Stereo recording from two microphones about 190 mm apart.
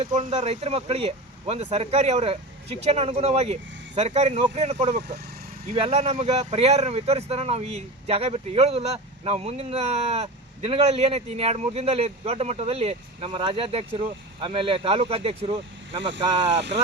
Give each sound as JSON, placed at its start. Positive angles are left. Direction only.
{"t": 0.2, "sound": "speech", "side_deg": -35}